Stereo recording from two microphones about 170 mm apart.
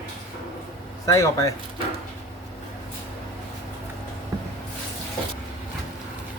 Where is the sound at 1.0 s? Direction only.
20° left (ahead or behind).